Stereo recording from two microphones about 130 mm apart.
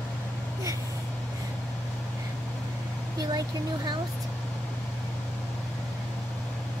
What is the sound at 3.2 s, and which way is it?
Speech, 30° right (ahead or behind).